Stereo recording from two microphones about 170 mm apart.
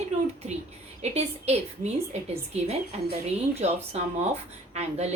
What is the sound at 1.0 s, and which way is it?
A woman's voice, 40° right (ahead or behind).